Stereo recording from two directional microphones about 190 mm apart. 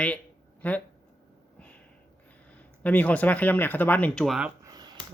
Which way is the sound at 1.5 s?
10° left (ahead or behind).